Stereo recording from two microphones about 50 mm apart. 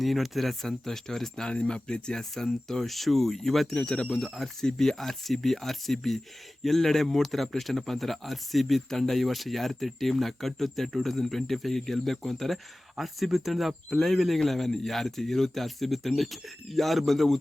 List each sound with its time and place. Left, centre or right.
0.0 s speech: centre
3.8 s speech: centre
4.2 s speech: centre